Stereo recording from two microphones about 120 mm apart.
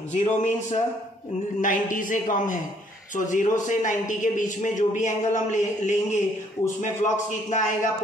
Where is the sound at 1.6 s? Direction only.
90° left.